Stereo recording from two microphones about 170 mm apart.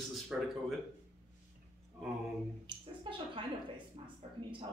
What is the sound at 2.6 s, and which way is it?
Speech, 30° right (ahead or behind).